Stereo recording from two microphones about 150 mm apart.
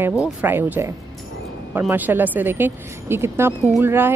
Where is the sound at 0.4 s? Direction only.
10° right (ahead or behind).